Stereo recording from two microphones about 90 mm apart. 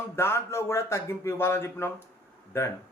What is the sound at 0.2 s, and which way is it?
A man's voice, 30° left (ahead or behind).